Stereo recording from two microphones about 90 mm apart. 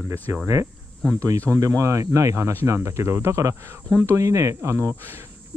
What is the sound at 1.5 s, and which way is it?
Speech, 35° right (ahead or behind).